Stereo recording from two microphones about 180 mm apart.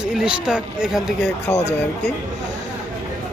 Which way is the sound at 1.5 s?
35° left (ahead or behind).